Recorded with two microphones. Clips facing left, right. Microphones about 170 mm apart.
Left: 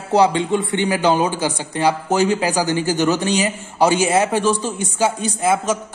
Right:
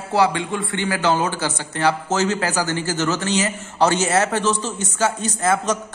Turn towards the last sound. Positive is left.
turn(degrees=10)  # may be behind; listen again after turning